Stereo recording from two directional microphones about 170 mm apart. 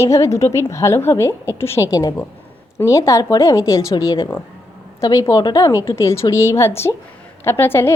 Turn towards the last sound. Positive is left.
turn(degrees=15)  # may be behind; listen again after turning